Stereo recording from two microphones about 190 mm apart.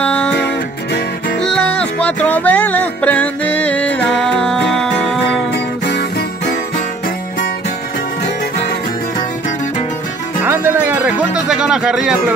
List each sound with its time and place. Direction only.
0.0 s music: 5° left (ahead or behind)
5.5 s music: 60° left (ahead or behind)
10.4 s music: 10° right (ahead or behind)